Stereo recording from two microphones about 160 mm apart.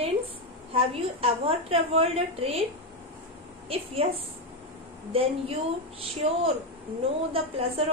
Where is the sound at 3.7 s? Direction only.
35° right (ahead or behind).